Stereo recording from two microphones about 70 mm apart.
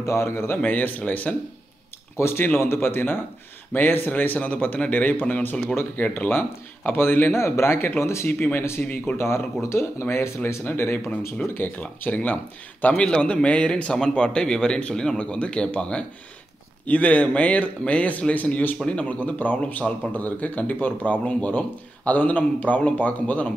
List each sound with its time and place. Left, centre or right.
0.0 s speech: left
0.6 s speech: left
2.1 s speech: left
7.3 s speech: left
8.3 s speech: left
9.6 s a man's voice: left